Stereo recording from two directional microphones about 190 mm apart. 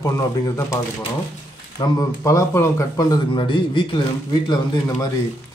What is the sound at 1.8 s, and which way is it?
Speech, 15° left (ahead or behind).